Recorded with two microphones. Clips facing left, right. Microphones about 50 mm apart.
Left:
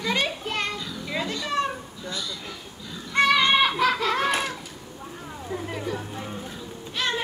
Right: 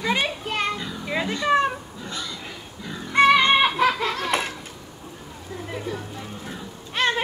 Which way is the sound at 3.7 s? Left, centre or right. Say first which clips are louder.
Right 2 dB; centre.